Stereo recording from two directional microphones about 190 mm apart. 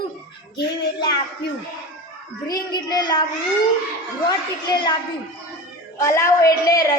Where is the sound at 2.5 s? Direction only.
20° left (ahead or behind).